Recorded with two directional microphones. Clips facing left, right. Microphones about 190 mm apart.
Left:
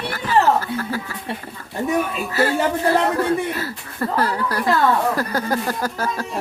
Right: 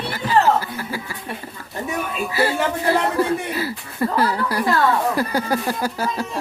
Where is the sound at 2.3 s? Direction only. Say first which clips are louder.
Left 2 dB; 10° right (ahead or behind).